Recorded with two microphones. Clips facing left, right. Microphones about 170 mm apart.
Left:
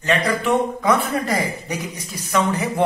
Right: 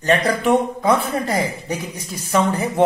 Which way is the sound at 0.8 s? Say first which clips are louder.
Right 1 dB; 30° right (ahead or behind).